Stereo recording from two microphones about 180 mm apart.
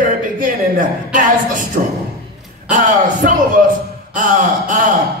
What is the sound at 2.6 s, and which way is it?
A man's voice, 50° right (ahead or behind).